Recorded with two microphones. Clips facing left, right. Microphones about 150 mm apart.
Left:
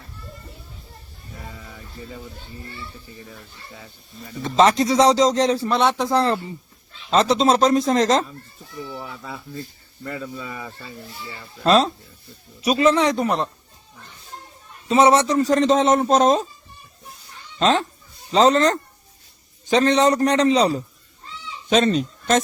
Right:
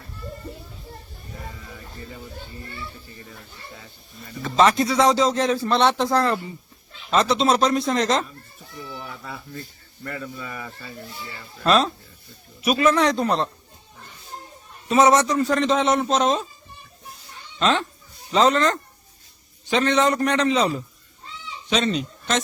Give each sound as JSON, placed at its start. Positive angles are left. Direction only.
{"t": 4.4, "sound": "speech", "side_deg": 30}
{"t": 5.6, "sound": "speech", "side_deg": 5}
{"t": 6.1, "sound": "a man's voice", "side_deg": 25}
{"t": 7.8, "sound": "a man's voice", "side_deg": 35}
{"t": 8.8, "sound": "speech", "side_deg": 20}
{"t": 14.8, "sound": "a man's voice", "side_deg": 25}
{"t": 17.6, "sound": "a man's voice", "side_deg": 40}
{"t": 21.7, "sound": "speech", "side_deg": 45}